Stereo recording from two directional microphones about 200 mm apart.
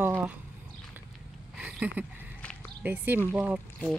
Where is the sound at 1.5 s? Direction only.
5° right (ahead or behind).